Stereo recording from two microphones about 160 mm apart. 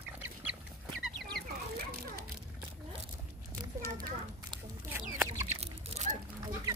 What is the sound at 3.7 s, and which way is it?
Children playing, 20° right (ahead or behind).